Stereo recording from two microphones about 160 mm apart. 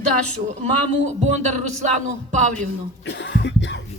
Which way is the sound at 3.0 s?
90° left.